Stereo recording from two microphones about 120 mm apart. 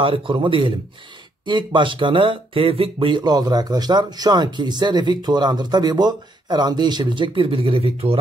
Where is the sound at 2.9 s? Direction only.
40° right (ahead or behind).